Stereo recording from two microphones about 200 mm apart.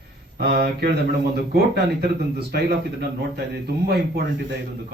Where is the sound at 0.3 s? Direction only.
50° right (ahead or behind).